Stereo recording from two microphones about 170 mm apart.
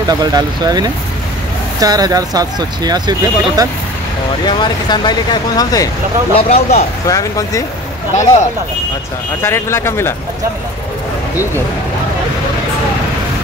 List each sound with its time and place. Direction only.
0.2 s speech: 25° right (ahead or behind)
4.5 s speech: 25° left (ahead or behind)
6.3 s speech: 40° left (ahead or behind)
7.1 s speech: 20° left (ahead or behind)
8.1 s speech: 45° left (ahead or behind)
9.4 s speech: 15° left (ahead or behind)